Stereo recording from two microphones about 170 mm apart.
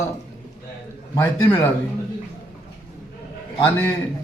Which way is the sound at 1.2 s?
10° left (ahead or behind).